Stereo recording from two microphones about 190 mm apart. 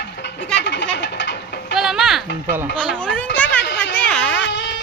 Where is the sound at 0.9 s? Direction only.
65° left (ahead or behind).